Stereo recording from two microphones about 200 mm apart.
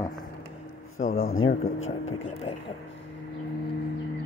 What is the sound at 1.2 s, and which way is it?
Speech, 85° left.